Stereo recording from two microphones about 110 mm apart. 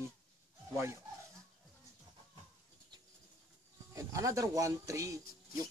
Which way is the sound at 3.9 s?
30° right (ahead or behind).